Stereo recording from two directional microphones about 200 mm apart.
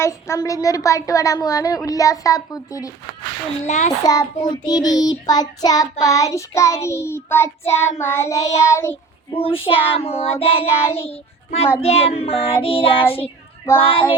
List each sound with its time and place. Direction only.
0.0 s a woman's voice: 15° left (ahead or behind)
3.7 s a child's voice: 35° left (ahead or behind)
4.0 s child singing: 15° left (ahead or behind)
4.9 s a woman's voice: 20° left (ahead or behind)
9.3 s child singing: 25° left (ahead or behind)
10.8 s a woman's voice: 15° left (ahead or behind)
11.8 s child singing: 30° left (ahead or behind)